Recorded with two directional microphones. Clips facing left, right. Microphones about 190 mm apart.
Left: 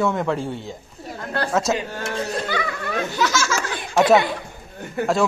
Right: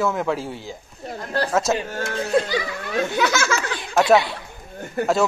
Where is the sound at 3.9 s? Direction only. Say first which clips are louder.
Left 1 dB; centre (ahead or behind).